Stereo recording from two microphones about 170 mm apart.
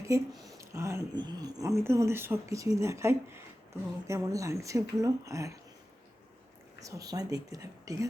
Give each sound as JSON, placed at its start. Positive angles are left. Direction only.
{"t": 0.0, "sound": "speech", "side_deg": -15}
{"t": 6.8, "sound": "speech", "side_deg": -20}